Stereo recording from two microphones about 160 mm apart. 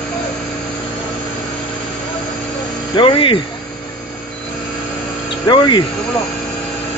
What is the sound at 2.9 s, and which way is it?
Speech, 30° left (ahead or behind).